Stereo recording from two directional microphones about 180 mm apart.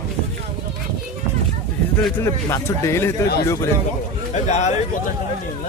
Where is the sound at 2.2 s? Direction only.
15° left (ahead or behind).